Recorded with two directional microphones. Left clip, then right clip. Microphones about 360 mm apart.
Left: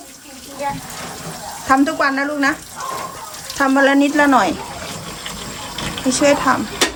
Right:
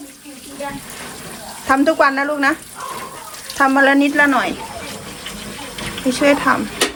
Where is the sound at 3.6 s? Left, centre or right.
Centre.